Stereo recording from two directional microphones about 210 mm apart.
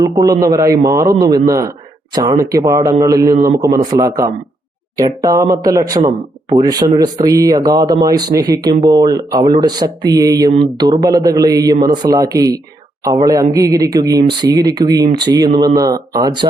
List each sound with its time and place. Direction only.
0.0 s speech: 15° right (ahead or behind)